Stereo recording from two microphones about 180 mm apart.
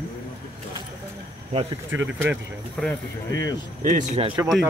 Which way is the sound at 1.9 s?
90° right.